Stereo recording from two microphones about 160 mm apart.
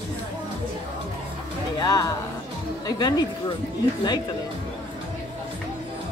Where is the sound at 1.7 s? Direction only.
25° left (ahead or behind).